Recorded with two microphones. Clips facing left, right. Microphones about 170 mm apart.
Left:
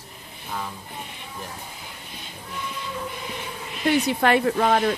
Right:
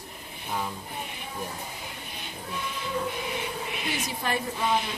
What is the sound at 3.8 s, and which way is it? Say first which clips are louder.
Speech: left 14 dB; 65° left (ahead or behind).